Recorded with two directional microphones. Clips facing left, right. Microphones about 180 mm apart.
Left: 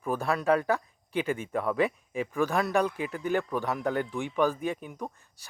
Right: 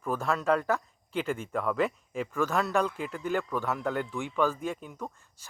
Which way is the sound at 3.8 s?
35° left (ahead or behind).